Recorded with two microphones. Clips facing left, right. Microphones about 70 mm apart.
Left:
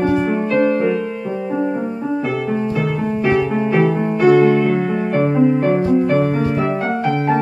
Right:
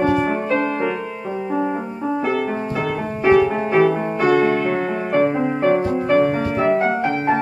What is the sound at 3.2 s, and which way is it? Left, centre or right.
Music, centre.